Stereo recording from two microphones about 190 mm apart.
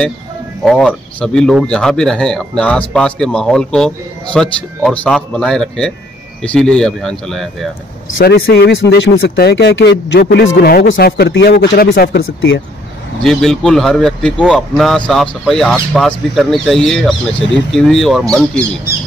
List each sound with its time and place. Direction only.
0.7 s speech: centre (ahead or behind)
8.2 s speech: 55° left (ahead or behind)
12.2 s speech: 80° left
13.2 s speech: centre (ahead or behind)